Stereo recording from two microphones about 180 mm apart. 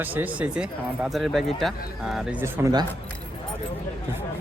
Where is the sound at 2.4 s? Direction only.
20° right (ahead or behind).